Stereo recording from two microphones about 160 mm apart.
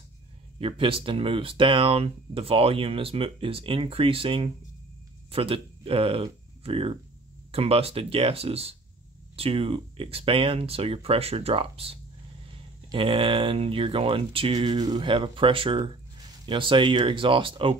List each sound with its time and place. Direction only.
0.6 s speech: 35° right (ahead or behind)